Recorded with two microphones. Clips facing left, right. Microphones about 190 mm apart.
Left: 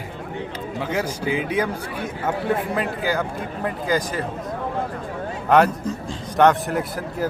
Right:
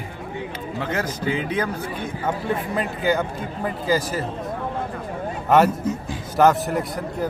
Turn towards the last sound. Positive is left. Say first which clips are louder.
# even
turn(degrees=0)  # may be behind; listen again after turning